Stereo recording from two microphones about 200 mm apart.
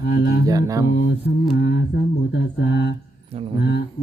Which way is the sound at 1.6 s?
60° left (ahead or behind).